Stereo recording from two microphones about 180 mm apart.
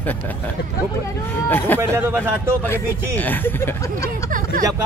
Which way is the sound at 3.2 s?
10° left (ahead or behind).